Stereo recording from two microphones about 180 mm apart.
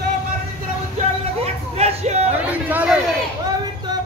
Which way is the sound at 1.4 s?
35° right (ahead or behind).